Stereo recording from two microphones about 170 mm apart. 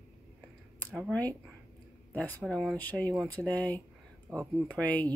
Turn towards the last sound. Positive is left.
turn(degrees=10)  # may be behind; listen again after turning